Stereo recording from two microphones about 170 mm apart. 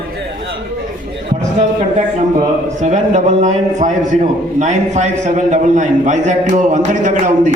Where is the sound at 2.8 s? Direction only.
45° right (ahead or behind).